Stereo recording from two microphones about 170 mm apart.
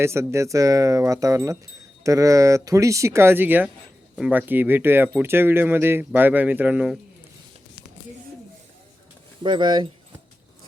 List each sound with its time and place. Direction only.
0.0 s speech: 15° right (ahead or behind)
9.4 s speech: 25° right (ahead or behind)